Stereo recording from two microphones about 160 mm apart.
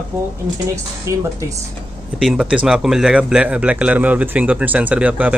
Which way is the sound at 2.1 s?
5° right (ahead or behind).